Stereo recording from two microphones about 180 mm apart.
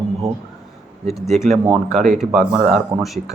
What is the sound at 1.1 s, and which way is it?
Speech, centre (ahead or behind).